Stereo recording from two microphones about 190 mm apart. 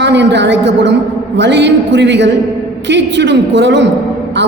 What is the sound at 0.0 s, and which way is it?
A woman's voice, 65° right (ahead or behind).